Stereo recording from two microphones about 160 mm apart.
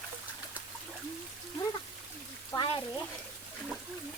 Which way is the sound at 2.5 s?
30° left (ahead or behind).